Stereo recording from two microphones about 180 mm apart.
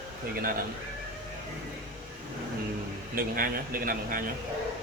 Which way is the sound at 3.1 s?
50° right (ahead or behind).